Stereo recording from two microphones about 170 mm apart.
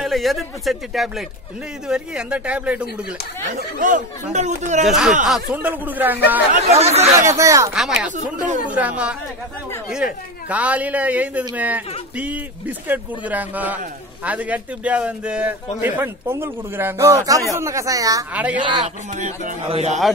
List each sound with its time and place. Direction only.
0.0 s a man's voice: centre (ahead or behind)
3.8 s speech: 45° right (ahead or behind)
4.8 s a man's voice: 5° right (ahead or behind)
6.5 s speech: 40° right (ahead or behind)
7.1 s a man's voice: 15° right (ahead or behind)
8.6 s a man's voice: 10° right (ahead or behind)
18.3 s a man's voice: 10° right (ahead or behind)
19.1 s speech: 45° right (ahead or behind)